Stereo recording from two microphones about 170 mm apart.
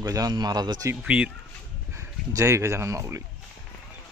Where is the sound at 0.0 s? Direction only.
20° right (ahead or behind).